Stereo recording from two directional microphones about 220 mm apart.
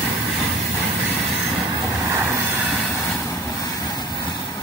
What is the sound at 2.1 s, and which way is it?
Vehicle, 15° right (ahead or behind).